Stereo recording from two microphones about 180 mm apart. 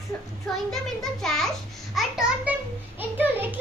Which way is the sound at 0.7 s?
Centre (ahead or behind).